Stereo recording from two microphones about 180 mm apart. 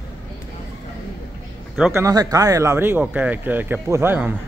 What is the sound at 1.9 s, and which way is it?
Speech, 20° right (ahead or behind).